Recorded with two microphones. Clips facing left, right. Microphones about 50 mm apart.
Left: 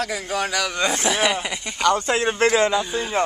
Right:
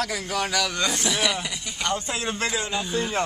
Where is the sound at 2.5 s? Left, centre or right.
Left.